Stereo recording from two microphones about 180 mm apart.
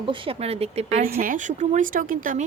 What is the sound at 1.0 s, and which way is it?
Speech, 50° right (ahead or behind).